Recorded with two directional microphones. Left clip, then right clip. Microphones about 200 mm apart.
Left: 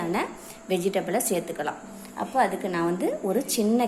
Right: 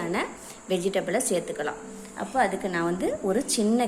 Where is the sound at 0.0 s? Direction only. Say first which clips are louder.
Left 1 dB; centre (ahead or behind).